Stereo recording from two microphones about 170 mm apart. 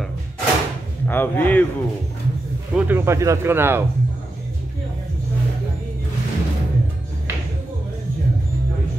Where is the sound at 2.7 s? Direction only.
15° right (ahead or behind).